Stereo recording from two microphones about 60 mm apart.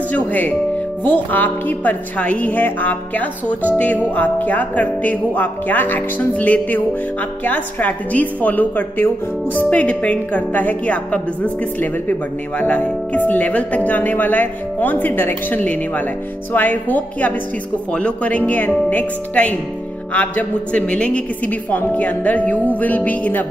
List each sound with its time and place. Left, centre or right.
0.1 s a woman's voice: left